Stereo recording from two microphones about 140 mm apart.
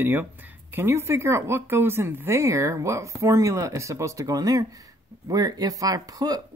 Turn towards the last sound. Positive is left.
turn(degrees=-25)  # may be behind; listen again after turning